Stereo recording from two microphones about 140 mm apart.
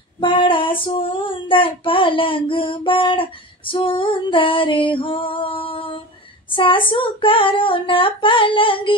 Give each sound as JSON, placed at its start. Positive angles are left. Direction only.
{"t": 0.2, "sound": "female singing", "side_deg": 35}